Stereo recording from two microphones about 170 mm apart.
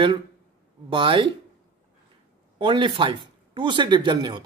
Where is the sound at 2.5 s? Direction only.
30° right (ahead or behind).